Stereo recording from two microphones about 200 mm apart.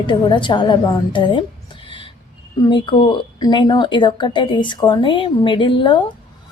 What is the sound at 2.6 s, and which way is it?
A woman's voice, 25° left (ahead or behind).